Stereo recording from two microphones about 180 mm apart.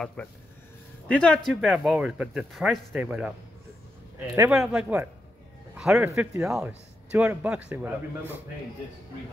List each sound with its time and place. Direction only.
0.2 s a man's voice: 5° left (ahead or behind)
4.4 s a man's voice: 5° right (ahead or behind)